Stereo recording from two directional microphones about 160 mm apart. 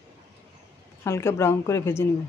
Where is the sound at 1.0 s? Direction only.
15° left (ahead or behind).